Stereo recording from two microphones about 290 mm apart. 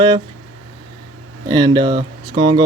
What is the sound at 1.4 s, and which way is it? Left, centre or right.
Speech, centre.